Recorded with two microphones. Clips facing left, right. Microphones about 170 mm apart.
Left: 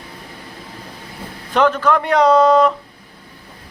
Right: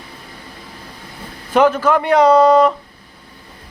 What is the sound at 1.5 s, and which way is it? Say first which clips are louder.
A man's voice: right 2 dB; 10° right (ahead or behind).